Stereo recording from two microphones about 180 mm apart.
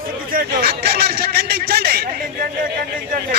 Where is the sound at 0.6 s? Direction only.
60° right (ahead or behind).